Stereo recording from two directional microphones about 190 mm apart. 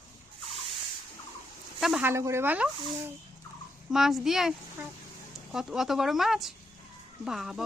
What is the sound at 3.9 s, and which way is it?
Speech, centre (ahead or behind).